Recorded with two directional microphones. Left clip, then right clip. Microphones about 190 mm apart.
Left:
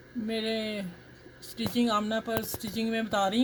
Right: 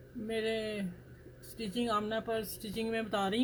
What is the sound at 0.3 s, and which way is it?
Speech, 55° left (ahead or behind).